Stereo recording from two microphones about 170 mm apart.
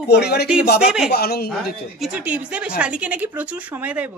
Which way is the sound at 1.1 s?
65° left (ahead or behind).